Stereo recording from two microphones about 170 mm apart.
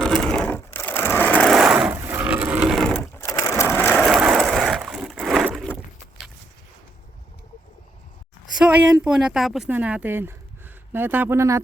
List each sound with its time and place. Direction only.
0.0 s sewing machine: 5° left (ahead or behind)
1.5 s a sound: 5° right (ahead or behind)
3.2 s sewing machine: 20° left (ahead or behind)
3.6 s skateboard: 15° left (ahead or behind)
4.0 s a sound: 5° right (ahead or behind)
8.5 s speech: 5° right (ahead or behind)